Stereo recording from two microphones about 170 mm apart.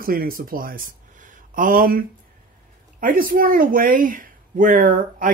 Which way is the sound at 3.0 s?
55° right (ahead or behind).